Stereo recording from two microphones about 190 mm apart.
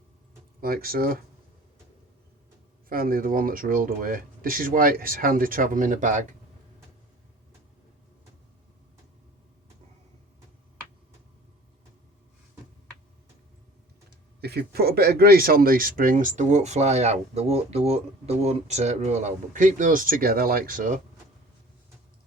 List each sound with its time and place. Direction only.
0.6 s speech: 50° right (ahead or behind)
2.9 s speech: 50° right (ahead or behind)
14.4 s speech: 55° right (ahead or behind)